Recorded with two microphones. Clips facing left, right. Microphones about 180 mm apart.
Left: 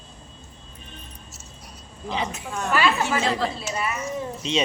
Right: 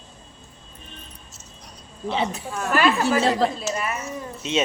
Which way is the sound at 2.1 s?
35° right (ahead or behind).